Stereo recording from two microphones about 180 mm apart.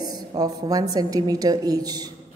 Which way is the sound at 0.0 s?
20° right (ahead or behind).